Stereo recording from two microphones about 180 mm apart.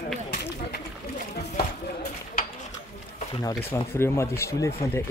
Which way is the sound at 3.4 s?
15° left (ahead or behind).